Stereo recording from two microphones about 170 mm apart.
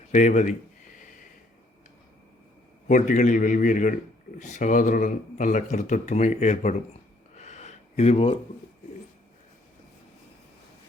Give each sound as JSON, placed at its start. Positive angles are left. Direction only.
{"t": 0.1, "sound": "a man's voice", "side_deg": 45}
{"t": 2.8, "sound": "a man's voice", "side_deg": 50}
{"t": 7.3, "sound": "a sound", "side_deg": 40}